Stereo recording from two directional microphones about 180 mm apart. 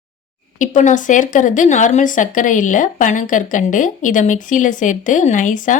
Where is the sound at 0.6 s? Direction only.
45° left (ahead or behind).